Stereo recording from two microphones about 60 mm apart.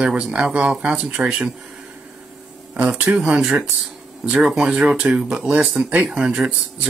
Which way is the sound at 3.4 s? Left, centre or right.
Centre.